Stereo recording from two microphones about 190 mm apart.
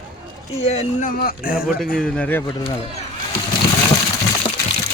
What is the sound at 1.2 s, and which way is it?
Speech, 50° left (ahead or behind).